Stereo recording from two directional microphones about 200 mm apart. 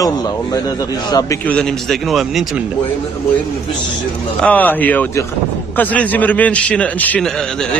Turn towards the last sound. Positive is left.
turn(degrees=5)  # may be behind; listen again after turning